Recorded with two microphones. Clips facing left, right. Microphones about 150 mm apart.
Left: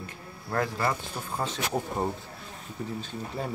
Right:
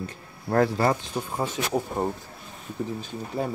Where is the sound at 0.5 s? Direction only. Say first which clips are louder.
Right 7 dB; 35° right (ahead or behind).